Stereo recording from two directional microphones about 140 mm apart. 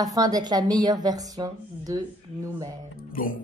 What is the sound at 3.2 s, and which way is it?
Speech, 75° left (ahead or behind).